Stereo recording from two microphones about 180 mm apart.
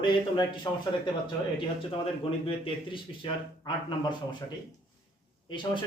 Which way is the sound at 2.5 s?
30° left (ahead or behind).